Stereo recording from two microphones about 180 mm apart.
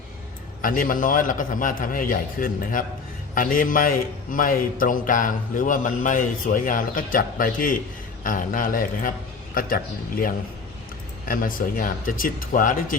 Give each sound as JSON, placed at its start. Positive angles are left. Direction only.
{"t": 0.6, "sound": "a man's voice", "side_deg": 50}